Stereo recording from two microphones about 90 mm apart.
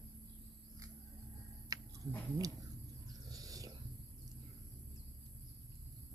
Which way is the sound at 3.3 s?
45° right (ahead or behind).